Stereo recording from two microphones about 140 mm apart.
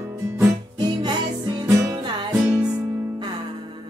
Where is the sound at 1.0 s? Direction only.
30° right (ahead or behind).